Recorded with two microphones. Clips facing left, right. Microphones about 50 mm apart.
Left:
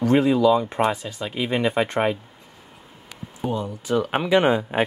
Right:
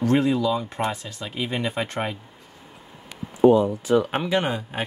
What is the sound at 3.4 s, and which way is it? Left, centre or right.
Speech, centre.